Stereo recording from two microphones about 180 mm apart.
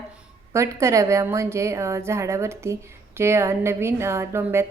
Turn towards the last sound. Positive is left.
turn(degrees=-15)  # may be behind; listen again after turning